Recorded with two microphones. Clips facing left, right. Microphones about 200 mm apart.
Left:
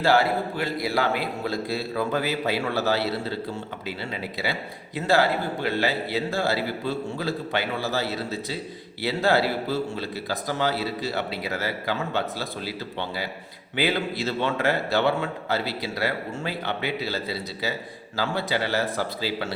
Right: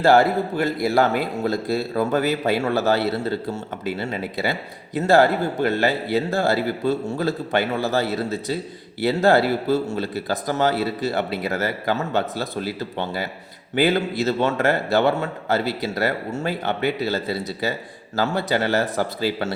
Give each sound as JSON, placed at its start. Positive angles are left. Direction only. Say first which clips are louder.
{"t": 0.0, "sound": "a man's voice", "louder": "right 5 dB", "side_deg": -45}